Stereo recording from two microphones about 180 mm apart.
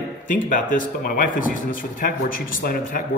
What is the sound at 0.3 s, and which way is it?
A man's voice, 45° left (ahead or behind).